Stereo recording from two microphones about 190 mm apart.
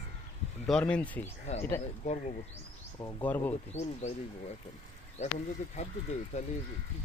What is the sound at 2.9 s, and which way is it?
Speech, 10° left (ahead or behind).